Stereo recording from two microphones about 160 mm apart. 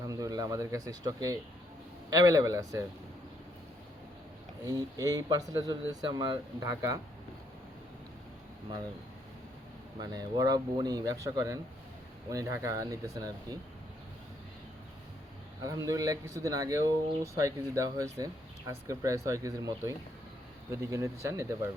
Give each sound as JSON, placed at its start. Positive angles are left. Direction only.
{"t": 0.0, "sound": "speech", "side_deg": -20}
{"t": 4.6, "sound": "speech", "side_deg": -20}
{"t": 10.0, "sound": "speech", "side_deg": -25}
{"t": 15.6, "sound": "speech", "side_deg": -20}